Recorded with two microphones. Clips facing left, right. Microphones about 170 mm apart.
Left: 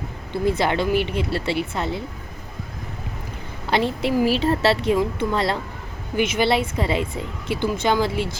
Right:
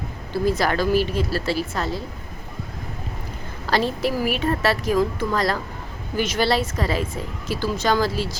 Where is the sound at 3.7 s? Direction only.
20° left (ahead or behind).